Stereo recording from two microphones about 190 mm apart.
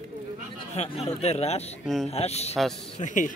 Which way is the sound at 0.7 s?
35° left (ahead or behind).